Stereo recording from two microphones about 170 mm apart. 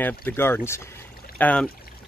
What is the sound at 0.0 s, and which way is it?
Speech, 10° left (ahead or behind).